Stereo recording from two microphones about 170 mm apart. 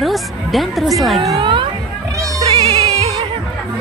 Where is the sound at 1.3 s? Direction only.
30° right (ahead or behind).